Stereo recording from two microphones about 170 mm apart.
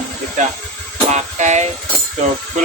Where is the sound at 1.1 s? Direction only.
45° right (ahead or behind).